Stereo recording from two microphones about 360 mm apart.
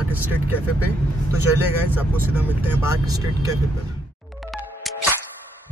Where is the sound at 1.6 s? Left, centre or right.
Centre.